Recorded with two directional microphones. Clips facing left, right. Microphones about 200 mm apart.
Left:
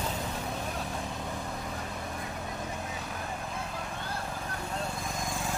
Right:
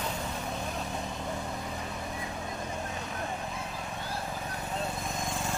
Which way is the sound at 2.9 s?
Centre (ahead or behind).